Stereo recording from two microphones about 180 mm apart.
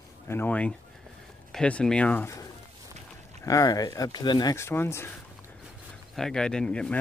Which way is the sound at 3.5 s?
20° left (ahead or behind).